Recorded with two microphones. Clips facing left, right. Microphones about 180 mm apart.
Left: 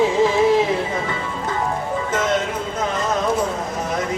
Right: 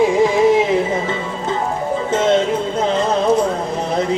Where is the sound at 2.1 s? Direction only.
25° right (ahead or behind).